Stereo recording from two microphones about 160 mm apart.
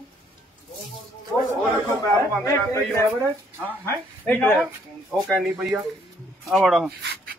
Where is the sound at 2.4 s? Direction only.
20° left (ahead or behind).